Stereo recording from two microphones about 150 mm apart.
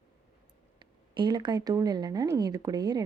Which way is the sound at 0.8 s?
30° right (ahead or behind).